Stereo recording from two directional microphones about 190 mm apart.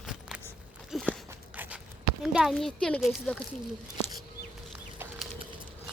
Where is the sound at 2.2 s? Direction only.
5° right (ahead or behind).